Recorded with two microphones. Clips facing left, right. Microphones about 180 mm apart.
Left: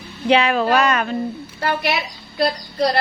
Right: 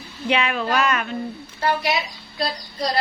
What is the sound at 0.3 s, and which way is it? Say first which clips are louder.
Speech: left 6 dB; 35° left (ahead or behind).